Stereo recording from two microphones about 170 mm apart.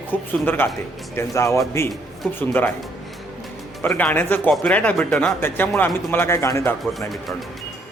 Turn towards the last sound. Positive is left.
turn(degrees=0)  # may be behind; listen again after turning